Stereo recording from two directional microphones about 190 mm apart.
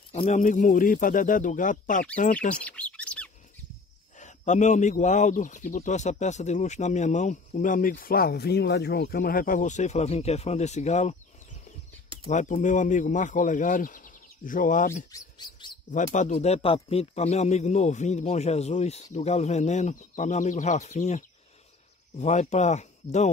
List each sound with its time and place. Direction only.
0.1 s speech: 35° left (ahead or behind)
2.5 s bird: 5° left (ahead or behind)
4.2 s speech: 40° left (ahead or behind)
15.0 s chirp: 20° left (ahead or behind)
15.9 s speech: 40° left (ahead or behind)
22.2 s speech: 35° left (ahead or behind)